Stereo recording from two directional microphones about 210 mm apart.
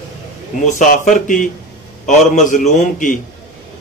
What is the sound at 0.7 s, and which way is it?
A man's voice, 35° left (ahead or behind).